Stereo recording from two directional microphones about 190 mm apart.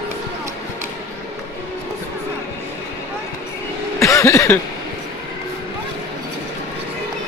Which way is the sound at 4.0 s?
15° left (ahead or behind).